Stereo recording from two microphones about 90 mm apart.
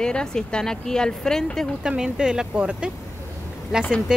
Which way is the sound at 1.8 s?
10° right (ahead or behind).